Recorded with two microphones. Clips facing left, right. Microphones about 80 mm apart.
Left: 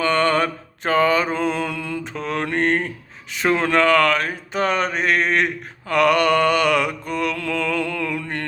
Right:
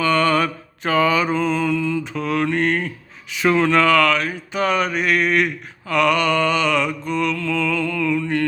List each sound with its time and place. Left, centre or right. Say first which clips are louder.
0.0 s mantra: right 1 dB; left
2.1 s speech: right 1 dB; left
5.9 s mantra: left 1 dB; left